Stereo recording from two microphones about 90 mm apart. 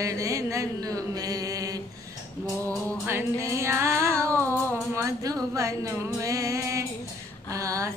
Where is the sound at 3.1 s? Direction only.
30° right (ahead or behind).